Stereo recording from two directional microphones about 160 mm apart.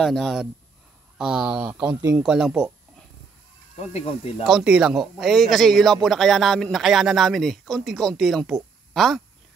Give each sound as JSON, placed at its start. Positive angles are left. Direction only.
{"t": 0.0, "sound": "a man's voice", "side_deg": 0}
{"t": 3.9, "sound": "speech", "side_deg": 35}
{"t": 4.5, "sound": "a man's voice", "side_deg": -5}